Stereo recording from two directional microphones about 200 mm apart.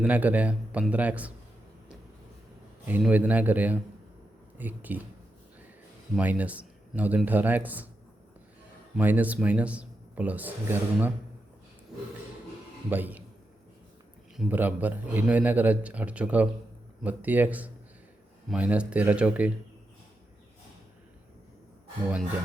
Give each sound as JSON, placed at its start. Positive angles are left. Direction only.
{"t": 0.0, "sound": "speech", "side_deg": -10}
{"t": 2.8, "sound": "speech", "side_deg": -10}
{"t": 6.1, "sound": "speech", "side_deg": -5}
{"t": 9.0, "sound": "speech", "side_deg": -10}
{"t": 12.9, "sound": "speech", "side_deg": -10}
{"t": 14.3, "sound": "speech", "side_deg": -10}